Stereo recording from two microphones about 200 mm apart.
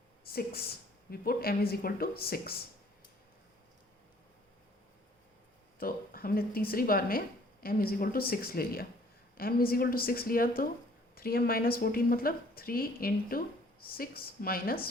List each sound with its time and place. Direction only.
0.3 s speech: 50° left (ahead or behind)
5.8 s speech: 50° left (ahead or behind)